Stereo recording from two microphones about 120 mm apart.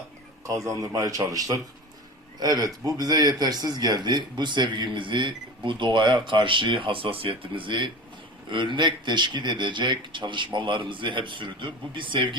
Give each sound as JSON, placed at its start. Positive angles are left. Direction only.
{"t": 0.4, "sound": "a man's voice", "side_deg": -25}